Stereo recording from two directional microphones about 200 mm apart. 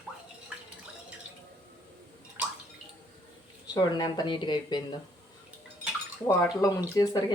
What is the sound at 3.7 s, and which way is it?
Speech, 20° left (ahead or behind).